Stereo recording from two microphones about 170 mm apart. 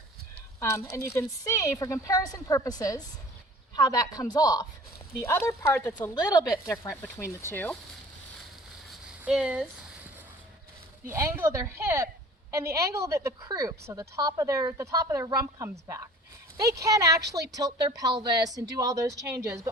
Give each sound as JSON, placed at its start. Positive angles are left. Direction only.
{"t": 0.6, "sound": "a woman's voice", "side_deg": 15}
{"t": 8.9, "sound": "a sound", "side_deg": -5}
{"t": 11.1, "sound": "a woman's voice", "side_deg": -15}